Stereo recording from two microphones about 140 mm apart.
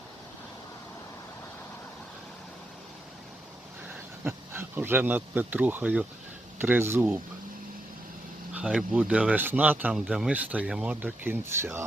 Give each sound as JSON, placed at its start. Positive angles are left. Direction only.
{"t": 3.8, "sound": "speech", "side_deg": -15}
{"t": 8.5, "sound": "speech", "side_deg": -5}